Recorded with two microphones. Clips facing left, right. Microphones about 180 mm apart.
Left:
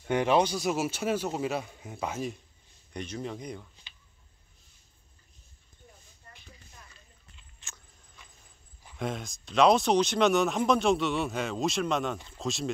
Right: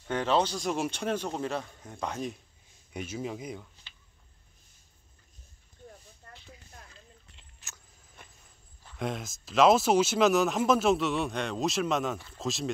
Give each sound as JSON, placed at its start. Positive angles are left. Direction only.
{"t": 0.1, "sound": "speech", "side_deg": 15}
{"t": 6.2, "sound": "a sound", "side_deg": -65}
{"t": 7.6, "sound": "vehicle", "side_deg": 0}
{"t": 8.9, "sound": "speech", "side_deg": 0}